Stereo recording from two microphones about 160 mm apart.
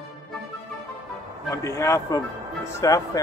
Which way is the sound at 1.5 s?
20° left (ahead or behind).